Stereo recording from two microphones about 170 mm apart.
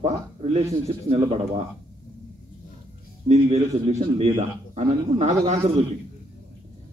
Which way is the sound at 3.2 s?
40° right (ahead or behind).